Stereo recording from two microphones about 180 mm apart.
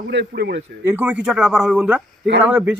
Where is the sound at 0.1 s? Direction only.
70° right (ahead or behind).